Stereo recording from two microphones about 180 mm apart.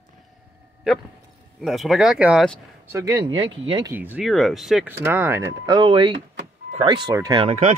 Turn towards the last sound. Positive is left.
turn(degrees=-40)  # may be behind; listen again after turning